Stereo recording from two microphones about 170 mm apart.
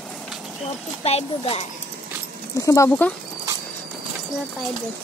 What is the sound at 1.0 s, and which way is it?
Speech, 35° left (ahead or behind).